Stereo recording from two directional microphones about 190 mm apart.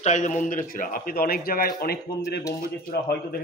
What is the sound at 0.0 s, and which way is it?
A man's voice, 40° left (ahead or behind).